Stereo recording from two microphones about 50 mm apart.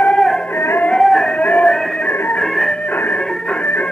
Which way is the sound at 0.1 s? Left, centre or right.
Centre.